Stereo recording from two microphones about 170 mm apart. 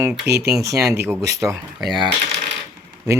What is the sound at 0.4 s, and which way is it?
Speech, 20° right (ahead or behind).